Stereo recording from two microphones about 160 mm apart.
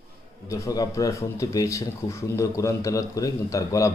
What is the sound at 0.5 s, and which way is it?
Speech, 20° left (ahead or behind).